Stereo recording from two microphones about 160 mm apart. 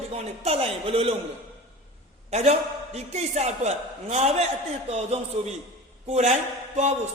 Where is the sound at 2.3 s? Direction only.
45° right (ahead or behind).